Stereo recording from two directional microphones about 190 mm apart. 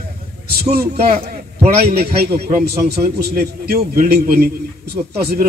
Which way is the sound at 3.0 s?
55° right (ahead or behind).